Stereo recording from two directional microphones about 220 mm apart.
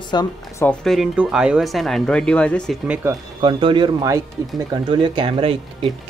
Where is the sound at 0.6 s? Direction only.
Centre (ahead or behind).